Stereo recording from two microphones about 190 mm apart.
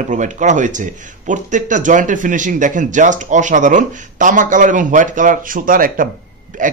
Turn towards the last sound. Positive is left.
turn(degrees=-45)  # may be behind; listen again after turning